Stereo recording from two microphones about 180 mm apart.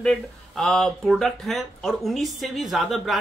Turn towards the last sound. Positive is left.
turn(degrees=0)  # may be behind; listen again after turning